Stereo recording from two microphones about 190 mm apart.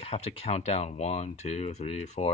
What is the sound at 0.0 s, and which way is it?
Speech, 30° left (ahead or behind).